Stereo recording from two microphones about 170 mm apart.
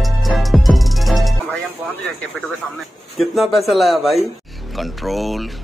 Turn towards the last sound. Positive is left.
turn(degrees=0)  # may be behind; listen again after turning